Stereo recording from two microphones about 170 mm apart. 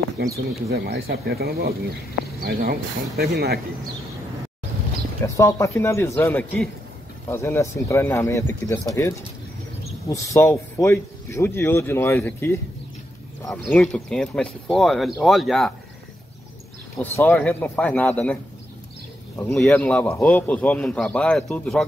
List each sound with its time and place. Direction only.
0.5 s speech: 65° right (ahead or behind)
5.2 s speech: 15° left (ahead or behind); by 15.7 s centre (ahead or behind)
17.2 s speech: 10° left (ahead or behind)